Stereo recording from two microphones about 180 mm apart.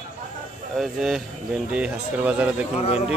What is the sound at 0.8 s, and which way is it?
A man's voice, centre (ahead or behind).